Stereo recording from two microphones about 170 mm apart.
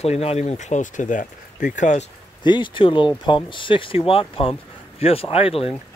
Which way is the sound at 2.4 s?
30° left (ahead or behind).